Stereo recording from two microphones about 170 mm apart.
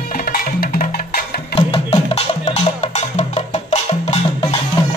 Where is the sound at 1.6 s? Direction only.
30° left (ahead or behind).